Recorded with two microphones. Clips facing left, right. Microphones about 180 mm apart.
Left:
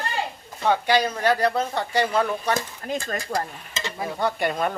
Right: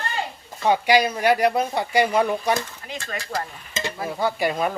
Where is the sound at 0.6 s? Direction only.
10° right (ahead or behind).